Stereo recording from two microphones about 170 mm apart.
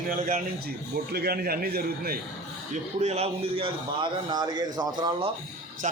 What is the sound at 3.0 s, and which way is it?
A man's voice, 40° right (ahead or behind).